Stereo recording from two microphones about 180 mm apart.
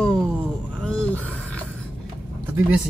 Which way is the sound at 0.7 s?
5° left (ahead or behind).